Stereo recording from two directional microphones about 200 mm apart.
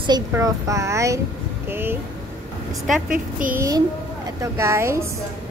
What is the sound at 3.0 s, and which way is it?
Speech, 40° right (ahead or behind).